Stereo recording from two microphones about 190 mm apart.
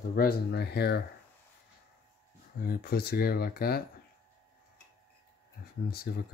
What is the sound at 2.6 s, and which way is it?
Speech, 50° left (ahead or behind).